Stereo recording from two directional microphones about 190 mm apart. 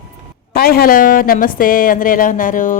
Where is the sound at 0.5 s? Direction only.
55° left (ahead or behind).